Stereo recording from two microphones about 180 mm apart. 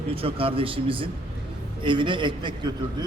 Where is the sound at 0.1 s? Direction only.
30° right (ahead or behind).